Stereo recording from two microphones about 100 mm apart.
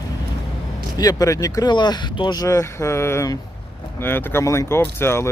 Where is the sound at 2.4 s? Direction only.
30° left (ahead or behind).